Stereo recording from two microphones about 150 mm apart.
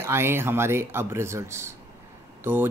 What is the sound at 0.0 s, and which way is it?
Speech, 15° right (ahead or behind).